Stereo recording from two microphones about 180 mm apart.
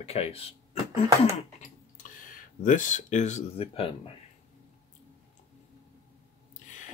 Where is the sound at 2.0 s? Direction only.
45° left (ahead or behind); by 4.1 s 30° left (ahead or behind).